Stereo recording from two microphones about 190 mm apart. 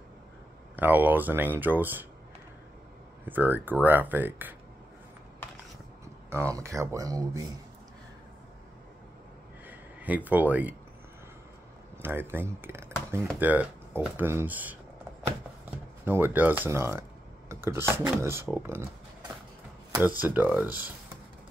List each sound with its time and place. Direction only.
0.7 s speech: 10° right (ahead or behind)
3.3 s speech: 10° right (ahead or behind)
6.3 s speech: 15° right (ahead or behind)
9.7 s speech: 10° right (ahead or behind)
12.0 s speech: 10° right (ahead or behind)
16.1 s speech: 10° right (ahead or behind)
19.9 s speech: 10° right (ahead or behind)